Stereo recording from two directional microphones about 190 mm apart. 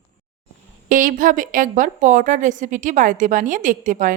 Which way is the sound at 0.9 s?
45° right (ahead or behind).